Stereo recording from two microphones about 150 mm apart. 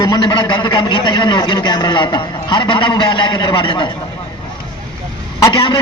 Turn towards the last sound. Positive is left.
turn(degrees=30)  # may be behind; listen again after turning